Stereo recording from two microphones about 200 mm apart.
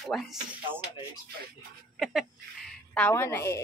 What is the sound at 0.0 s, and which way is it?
Speech, centre (ahead or behind).